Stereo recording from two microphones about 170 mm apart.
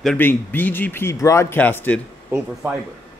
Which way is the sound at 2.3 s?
15° right (ahead or behind).